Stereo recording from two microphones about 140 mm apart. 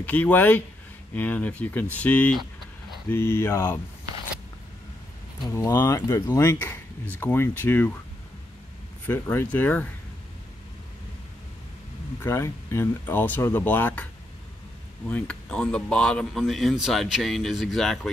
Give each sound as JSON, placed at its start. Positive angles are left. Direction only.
{"t": 0.0, "sound": "speech", "side_deg": 10}
{"t": 5.5, "sound": "speech", "side_deg": 20}
{"t": 9.0, "sound": "speech", "side_deg": 15}
{"t": 12.2, "sound": "speech", "side_deg": 20}
{"t": 15.0, "sound": "speech", "side_deg": 10}